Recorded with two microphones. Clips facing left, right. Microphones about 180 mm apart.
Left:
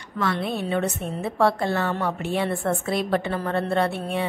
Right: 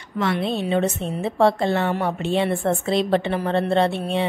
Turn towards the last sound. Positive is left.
turn(degrees=-25)  # may be behind; listen again after turning